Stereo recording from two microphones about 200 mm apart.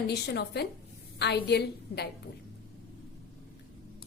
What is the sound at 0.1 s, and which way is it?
A woman's voice, 55° left (ahead or behind).